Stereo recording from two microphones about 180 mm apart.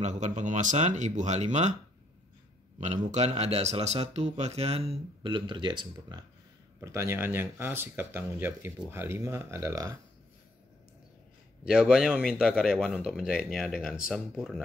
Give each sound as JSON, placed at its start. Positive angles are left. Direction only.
{"t": 0.0, "sound": "a man's voice", "side_deg": -40}
{"t": 2.8, "sound": "a man's voice", "side_deg": -40}
{"t": 11.6, "sound": "speech", "side_deg": -5}